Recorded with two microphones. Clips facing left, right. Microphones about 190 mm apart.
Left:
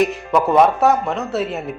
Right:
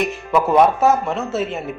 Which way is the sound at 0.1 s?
Centre (ahead or behind).